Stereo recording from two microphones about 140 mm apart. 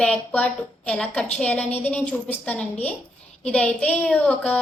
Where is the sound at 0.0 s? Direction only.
10° left (ahead or behind).